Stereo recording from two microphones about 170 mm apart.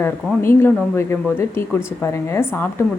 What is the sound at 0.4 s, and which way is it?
A woman's voice, 15° left (ahead or behind).